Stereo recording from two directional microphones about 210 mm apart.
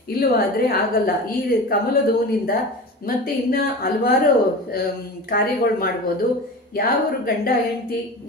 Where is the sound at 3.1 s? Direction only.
45° left (ahead or behind).